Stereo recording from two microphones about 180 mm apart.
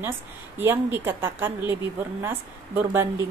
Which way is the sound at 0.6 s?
10° right (ahead or behind).